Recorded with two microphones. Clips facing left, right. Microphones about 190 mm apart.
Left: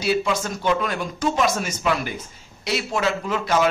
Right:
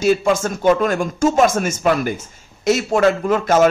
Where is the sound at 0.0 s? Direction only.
50° right (ahead or behind).